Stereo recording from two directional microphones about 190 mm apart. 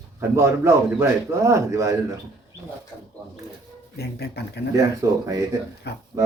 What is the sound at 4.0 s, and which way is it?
Speech, 60° left (ahead or behind).